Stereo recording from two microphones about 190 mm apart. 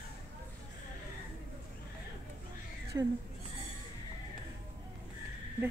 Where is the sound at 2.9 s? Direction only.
20° right (ahead or behind).